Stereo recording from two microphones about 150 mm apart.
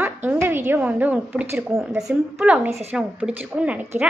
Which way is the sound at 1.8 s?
Centre (ahead or behind).